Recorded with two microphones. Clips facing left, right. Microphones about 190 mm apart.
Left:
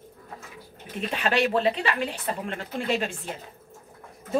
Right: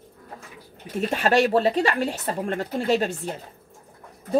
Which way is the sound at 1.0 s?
45° right (ahead or behind).